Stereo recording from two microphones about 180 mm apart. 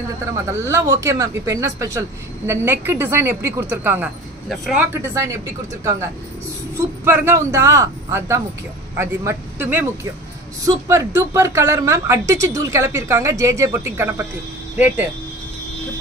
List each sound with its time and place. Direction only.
0.5 s speech: 15° right (ahead or behind)
4.9 s speech: 15° right (ahead or behind)
7.1 s speech: 15° right (ahead or behind)